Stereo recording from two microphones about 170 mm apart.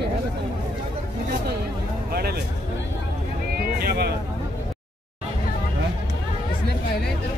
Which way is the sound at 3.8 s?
70° right (ahead or behind).